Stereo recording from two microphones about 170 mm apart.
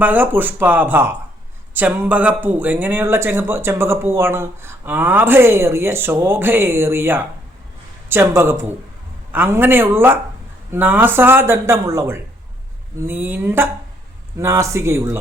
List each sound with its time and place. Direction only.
0.0 s speech: 10° right (ahead or behind)